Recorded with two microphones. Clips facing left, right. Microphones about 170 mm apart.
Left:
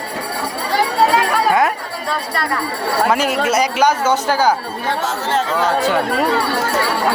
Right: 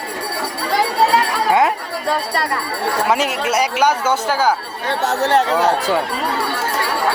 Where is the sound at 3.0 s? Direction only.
20° right (ahead or behind).